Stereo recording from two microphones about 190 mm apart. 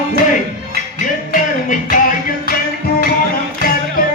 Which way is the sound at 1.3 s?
45° left (ahead or behind).